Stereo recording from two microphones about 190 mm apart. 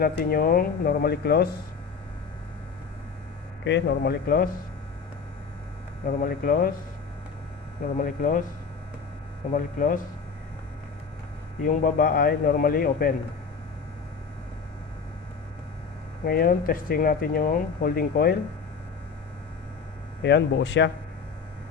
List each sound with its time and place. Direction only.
0.0 s speech: 50° left (ahead or behind)
3.6 s speech: 70° left (ahead or behind)
6.1 s speech: 50° left (ahead or behind)
7.9 s speech: 45° left (ahead or behind)
9.5 s speech: 45° left (ahead or behind)
11.6 s speech: 45° left (ahead or behind)
16.2 s speech: 55° left (ahead or behind)
20.2 s speech: 65° left (ahead or behind)